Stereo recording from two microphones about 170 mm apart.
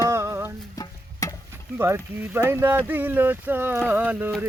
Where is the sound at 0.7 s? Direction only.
20° left (ahead or behind).